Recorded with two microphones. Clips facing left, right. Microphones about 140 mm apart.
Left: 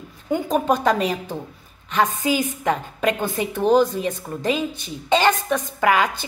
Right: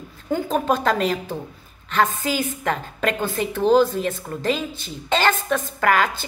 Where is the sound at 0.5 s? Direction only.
10° left (ahead or behind).